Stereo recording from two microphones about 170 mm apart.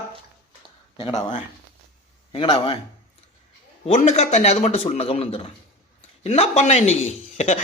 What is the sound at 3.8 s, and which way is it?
A man's voice, 40° left (ahead or behind).